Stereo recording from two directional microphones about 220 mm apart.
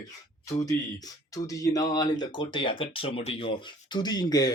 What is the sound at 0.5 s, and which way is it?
Speech, 15° left (ahead or behind).